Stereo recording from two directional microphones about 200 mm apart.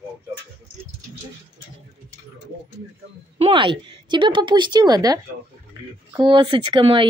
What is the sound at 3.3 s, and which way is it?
A woman's voice, 25° right (ahead or behind).